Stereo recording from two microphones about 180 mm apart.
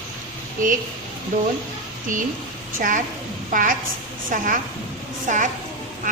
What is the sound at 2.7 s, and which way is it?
Speech, 50° right (ahead or behind).